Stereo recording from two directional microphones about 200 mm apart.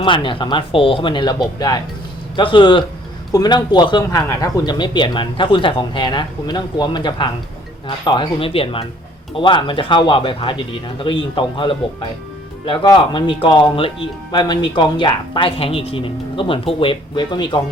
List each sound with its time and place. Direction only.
0.0 s speech: 25° left (ahead or behind)